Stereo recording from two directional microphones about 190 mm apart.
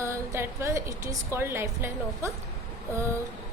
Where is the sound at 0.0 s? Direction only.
15° right (ahead or behind).